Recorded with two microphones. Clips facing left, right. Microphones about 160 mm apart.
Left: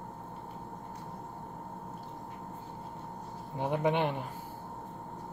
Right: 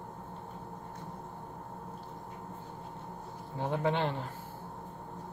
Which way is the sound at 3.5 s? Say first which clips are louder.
Left 2 dB; 15° left (ahead or behind).